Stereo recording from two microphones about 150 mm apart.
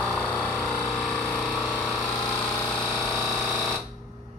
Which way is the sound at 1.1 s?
10° left (ahead or behind).